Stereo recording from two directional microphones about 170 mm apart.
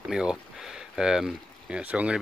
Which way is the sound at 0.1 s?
5° right (ahead or behind).